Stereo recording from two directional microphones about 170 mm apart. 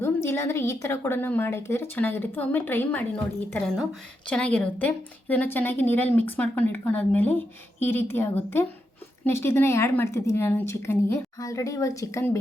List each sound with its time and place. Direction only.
0.0 s speech: 15° left (ahead or behind)